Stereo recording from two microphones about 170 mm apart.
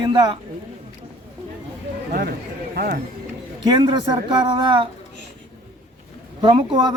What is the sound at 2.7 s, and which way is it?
Speech, 60° right (ahead or behind).